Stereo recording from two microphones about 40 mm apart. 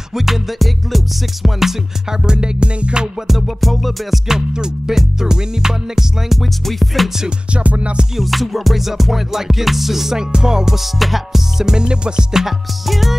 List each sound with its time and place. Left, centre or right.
0.1 s music: centre
2.2 s music: right
3.4 s music: centre
4.3 s music: centre
6.6 s music: centre
7.5 s music: right
8.2 s music: centre
12.8 s music: centre